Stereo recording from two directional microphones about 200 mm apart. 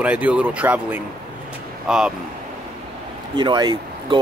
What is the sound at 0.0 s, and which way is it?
Speech, 5° right (ahead or behind).